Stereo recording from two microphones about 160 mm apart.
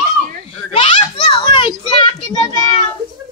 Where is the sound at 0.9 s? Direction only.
35° left (ahead or behind).